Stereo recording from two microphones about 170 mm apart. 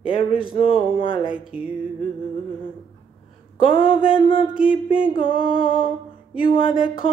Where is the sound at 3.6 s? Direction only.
30° left (ahead or behind).